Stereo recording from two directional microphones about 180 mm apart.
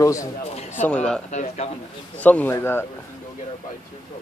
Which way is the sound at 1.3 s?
40° left (ahead or behind).